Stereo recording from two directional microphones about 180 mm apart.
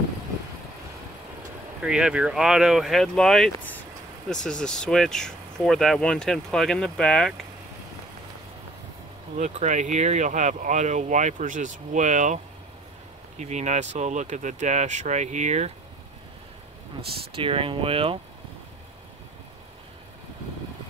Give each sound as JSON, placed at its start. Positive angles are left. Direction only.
{"t": 1.8, "sound": "speech", "side_deg": -5}
{"t": 9.4, "sound": "speech", "side_deg": -40}
{"t": 13.4, "sound": "speech", "side_deg": -40}
{"t": 17.4, "sound": "speech", "side_deg": -30}